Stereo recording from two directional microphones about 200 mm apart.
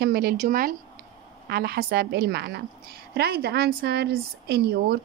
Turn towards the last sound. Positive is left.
turn(degrees=-55)  # may be behind; listen again after turning